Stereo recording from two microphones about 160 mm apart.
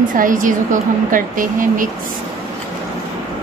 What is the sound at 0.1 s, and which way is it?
Speech, 55° right (ahead or behind).